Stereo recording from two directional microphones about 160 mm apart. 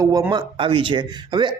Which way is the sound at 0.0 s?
20° right (ahead or behind).